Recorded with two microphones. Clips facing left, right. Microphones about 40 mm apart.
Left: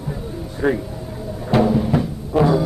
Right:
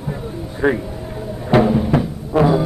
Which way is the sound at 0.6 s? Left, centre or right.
Right.